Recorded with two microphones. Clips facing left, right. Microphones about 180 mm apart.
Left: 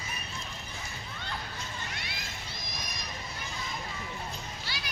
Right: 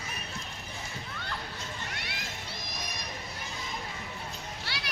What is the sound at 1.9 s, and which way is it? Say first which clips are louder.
Children playing: right 1 dB; 70° right (ahead or behind).